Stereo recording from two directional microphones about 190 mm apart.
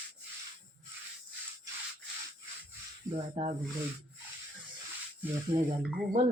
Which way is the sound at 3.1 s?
35° right (ahead or behind).